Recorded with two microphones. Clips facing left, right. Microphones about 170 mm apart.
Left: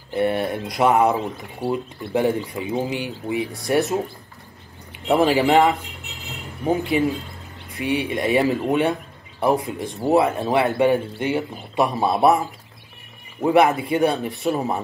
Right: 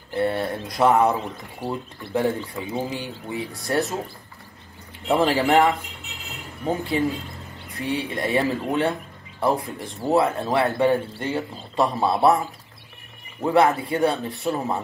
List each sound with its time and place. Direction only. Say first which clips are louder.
0.1 s a man's voice: left 2 dB; 15° left (ahead or behind)
5.0 s a man's voice: left 3 dB; 15° left (ahead or behind)
13.4 s a man's voice: left 2 dB; 15° left (ahead or behind)